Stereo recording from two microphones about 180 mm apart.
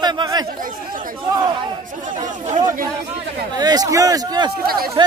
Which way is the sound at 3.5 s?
20° right (ahead or behind).